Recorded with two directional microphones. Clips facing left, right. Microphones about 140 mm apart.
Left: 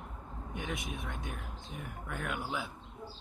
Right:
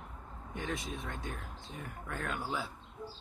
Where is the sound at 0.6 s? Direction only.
Centre (ahead or behind).